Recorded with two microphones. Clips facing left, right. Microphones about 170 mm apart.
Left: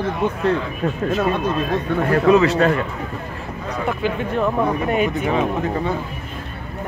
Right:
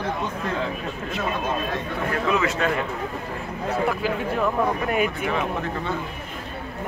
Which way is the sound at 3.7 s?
5° right (ahead or behind).